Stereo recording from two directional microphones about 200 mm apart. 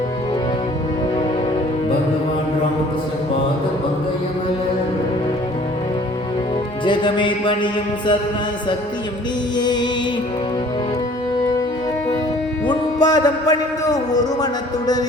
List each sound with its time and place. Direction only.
6.8 s speech: 25° left (ahead or behind)
9.6 s speech: 20° left (ahead or behind)
13.0 s speech: 20° left (ahead or behind)